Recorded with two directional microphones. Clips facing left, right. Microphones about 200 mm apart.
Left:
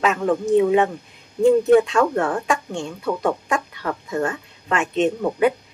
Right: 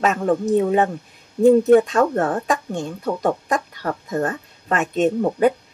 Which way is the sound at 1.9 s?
35° right (ahead or behind).